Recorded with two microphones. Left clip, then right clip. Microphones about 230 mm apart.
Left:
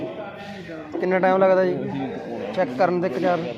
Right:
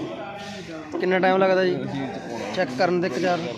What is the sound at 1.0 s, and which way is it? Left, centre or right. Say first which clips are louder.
Speech: left 1 dB; centre.